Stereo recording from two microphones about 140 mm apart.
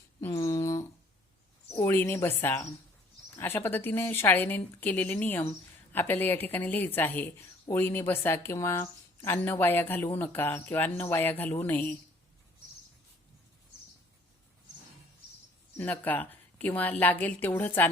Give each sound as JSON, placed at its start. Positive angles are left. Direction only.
{"t": 0.2, "sound": "a sound", "side_deg": 20}
{"t": 1.7, "sound": "a woman's voice", "side_deg": 20}
{"t": 15.8, "sound": "a woman's voice", "side_deg": 10}